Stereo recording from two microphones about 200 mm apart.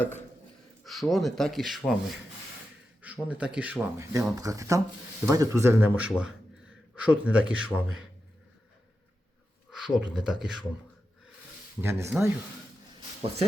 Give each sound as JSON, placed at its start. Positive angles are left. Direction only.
{"t": 0.9, "sound": "speech", "side_deg": 0}
{"t": 3.0, "sound": "speech", "side_deg": -5}
{"t": 9.6, "sound": "speech", "side_deg": -5}
{"t": 11.8, "sound": "speech", "side_deg": -15}